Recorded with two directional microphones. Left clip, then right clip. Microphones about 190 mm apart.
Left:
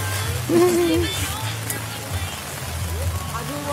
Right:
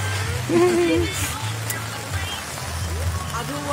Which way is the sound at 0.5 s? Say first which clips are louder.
Left 1 dB; 10° left (ahead or behind).